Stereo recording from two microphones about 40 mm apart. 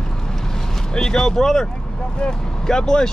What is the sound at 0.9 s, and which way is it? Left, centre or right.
Speech, centre.